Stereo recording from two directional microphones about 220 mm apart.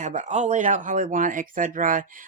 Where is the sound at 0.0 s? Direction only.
35° right (ahead or behind).